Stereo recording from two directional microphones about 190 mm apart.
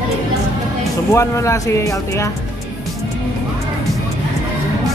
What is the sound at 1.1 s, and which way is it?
Speech, 15° left (ahead or behind).